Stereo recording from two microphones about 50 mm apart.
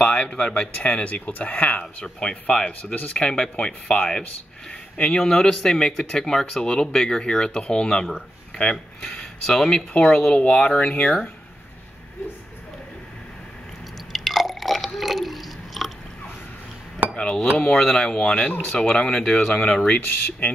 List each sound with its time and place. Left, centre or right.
0.0 s speech: left
1.8 s speech: centre
2.8 s speech: left
3.3 s speech: centre
10.8 s speech: left
14.1 s drip: centre
17.1 s a sound: left
17.7 s speech: centre
19.9 s speech: left